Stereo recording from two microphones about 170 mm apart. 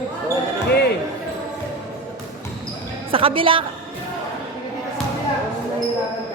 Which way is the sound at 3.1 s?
30° right (ahead or behind).